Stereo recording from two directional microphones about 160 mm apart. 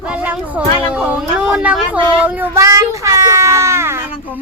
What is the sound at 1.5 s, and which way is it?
Child singing, 5° right (ahead or behind).